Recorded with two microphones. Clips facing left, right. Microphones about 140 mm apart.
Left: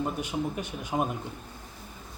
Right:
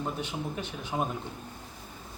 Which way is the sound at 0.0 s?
10° left (ahead or behind).